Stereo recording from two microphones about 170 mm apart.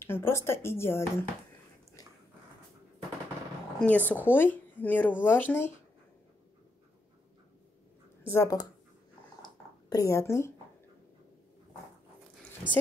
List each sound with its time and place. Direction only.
0.0 s speech: 15° left (ahead or behind)
3.8 s speech: 10° left (ahead or behind)
8.3 s speech: 20° left (ahead or behind)
9.4 s a sound: 20° left (ahead or behind)